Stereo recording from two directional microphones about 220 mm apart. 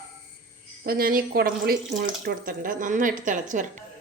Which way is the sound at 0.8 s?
40° right (ahead or behind).